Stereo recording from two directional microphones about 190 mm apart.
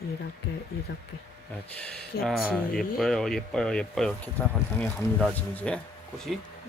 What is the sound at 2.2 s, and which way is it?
Speech, centre (ahead or behind).